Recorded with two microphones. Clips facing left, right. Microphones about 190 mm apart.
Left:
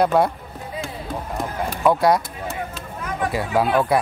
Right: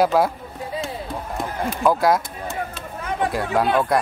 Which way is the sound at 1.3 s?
Centre (ahead or behind).